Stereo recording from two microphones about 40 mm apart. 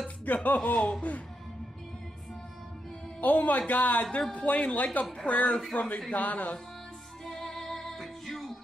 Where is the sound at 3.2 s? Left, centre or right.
Left.